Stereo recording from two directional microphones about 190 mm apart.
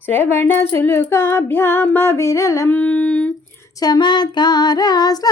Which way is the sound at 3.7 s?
20° left (ahead or behind).